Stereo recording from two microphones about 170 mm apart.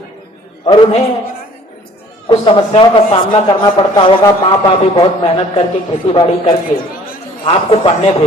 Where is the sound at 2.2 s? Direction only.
30° left (ahead or behind).